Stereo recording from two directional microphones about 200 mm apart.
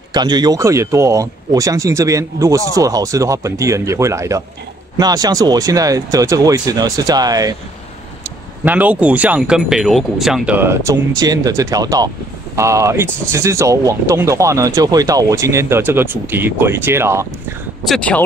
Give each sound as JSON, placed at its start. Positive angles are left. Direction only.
{"t": 0.1, "sound": "speech", "side_deg": -20}
{"t": 8.6, "sound": "speech", "side_deg": -10}
{"t": 17.8, "sound": "speech", "side_deg": 5}